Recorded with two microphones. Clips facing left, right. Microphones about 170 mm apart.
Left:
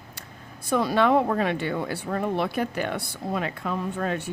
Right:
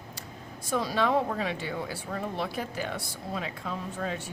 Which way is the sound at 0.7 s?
60° left (ahead or behind).